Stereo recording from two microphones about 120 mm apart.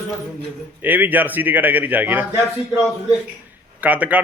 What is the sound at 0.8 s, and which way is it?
A man's voice, 15° right (ahead or behind).